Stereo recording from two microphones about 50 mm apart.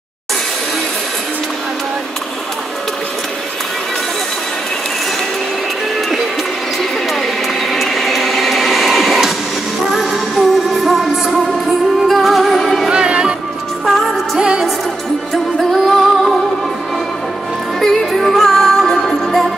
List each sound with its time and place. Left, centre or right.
7.7 s printer: centre
9.9 s music: centre
12.9 s music: centre
13.8 s music: centre
14.4 s music: centre
15.7 s music: centre
17.7 s music: centre